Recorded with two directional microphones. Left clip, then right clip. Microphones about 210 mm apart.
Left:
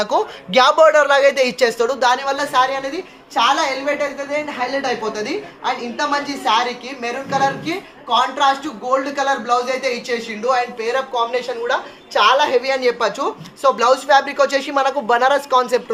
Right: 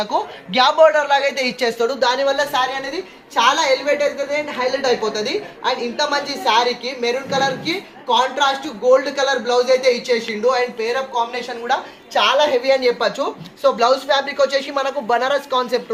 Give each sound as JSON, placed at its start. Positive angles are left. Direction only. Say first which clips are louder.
{"t": 0.0, "sound": "a man's voice", "louder": "left 3 dB", "side_deg": 60}
{"t": 2.2, "sound": "a woman's voice", "louder": "left 1 dB", "side_deg": 30}